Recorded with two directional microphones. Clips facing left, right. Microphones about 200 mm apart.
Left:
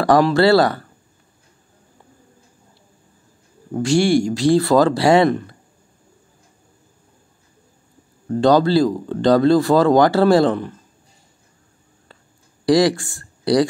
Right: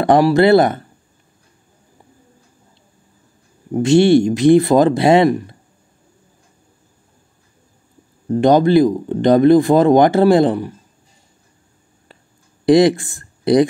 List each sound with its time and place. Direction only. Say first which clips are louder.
0.0 s speech: right 2 dB; 20° right (ahead or behind)
3.7 s speech: right 5 dB; 20° right (ahead or behind)
8.3 s speech: right 3 dB; 20° right (ahead or behind)
12.6 s speech: right 4 dB; 20° right (ahead or behind)